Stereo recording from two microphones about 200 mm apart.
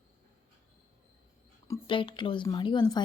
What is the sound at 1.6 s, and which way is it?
Speech, 20° left (ahead or behind).